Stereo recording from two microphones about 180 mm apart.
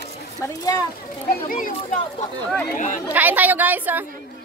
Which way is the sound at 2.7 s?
45° left (ahead or behind).